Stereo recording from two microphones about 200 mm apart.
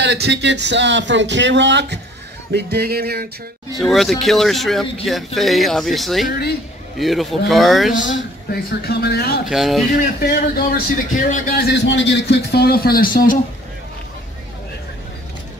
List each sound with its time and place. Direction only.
0.0 s speech: 60° right (ahead or behind)
2.5 s music: 50° right (ahead or behind)
3.7 s speech: centre (ahead or behind)
6.2 s a man's voice: 50° left (ahead or behind)
7.0 s speech: centre (ahead or behind)
8.8 s a man's voice: 55° left (ahead or behind)
9.5 s speech: centre (ahead or behind)
10.2 s a man's voice: 50° left (ahead or behind)